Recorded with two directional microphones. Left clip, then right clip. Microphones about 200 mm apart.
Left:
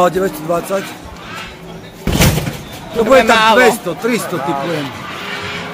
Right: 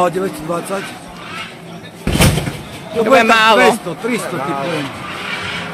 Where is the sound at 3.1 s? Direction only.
25° right (ahead or behind).